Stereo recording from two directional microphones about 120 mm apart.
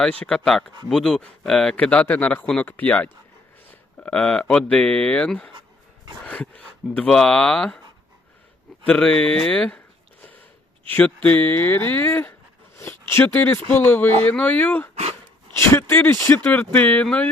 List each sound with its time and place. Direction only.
0.0 s speech: 10° left (ahead or behind)
8.9 s speech: 10° left (ahead or behind)